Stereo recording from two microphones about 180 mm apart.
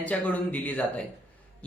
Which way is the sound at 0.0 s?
10° left (ahead or behind).